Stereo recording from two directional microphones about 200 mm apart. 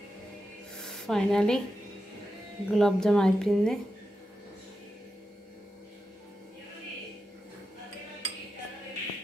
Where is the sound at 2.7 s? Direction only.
Centre (ahead or behind).